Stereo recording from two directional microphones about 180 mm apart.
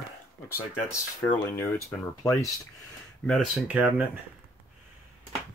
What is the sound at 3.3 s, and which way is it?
Speech, centre (ahead or behind).